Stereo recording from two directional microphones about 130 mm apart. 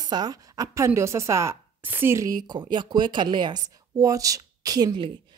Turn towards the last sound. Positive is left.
turn(degrees=-35)  # may be behind; listen again after turning